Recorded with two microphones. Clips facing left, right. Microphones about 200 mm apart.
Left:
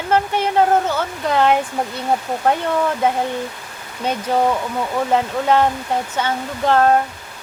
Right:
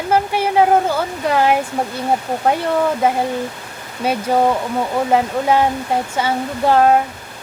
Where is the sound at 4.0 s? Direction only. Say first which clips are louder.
Right 2 dB; 10° right (ahead or behind).